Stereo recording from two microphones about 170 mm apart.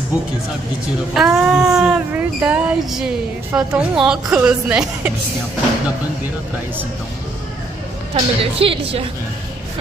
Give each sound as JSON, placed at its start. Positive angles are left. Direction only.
{"t": 1.1, "sound": "speech", "side_deg": -5}
{"t": 8.1, "sound": "a woman's voice", "side_deg": -35}